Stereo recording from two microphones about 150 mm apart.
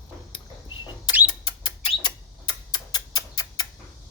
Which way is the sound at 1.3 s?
30° left (ahead or behind).